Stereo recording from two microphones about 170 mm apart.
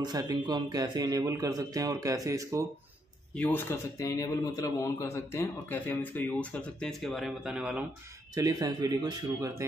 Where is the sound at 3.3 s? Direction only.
15° left (ahead or behind); by 7.9 s 5° right (ahead or behind).